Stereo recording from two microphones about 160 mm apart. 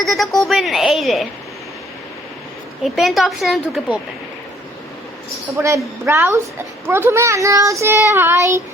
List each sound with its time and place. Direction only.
0.0 s a woman's voice: centre (ahead or behind)
2.8 s a woman's voice: centre (ahead or behind)
5.5 s a child's voice: 15° right (ahead or behind)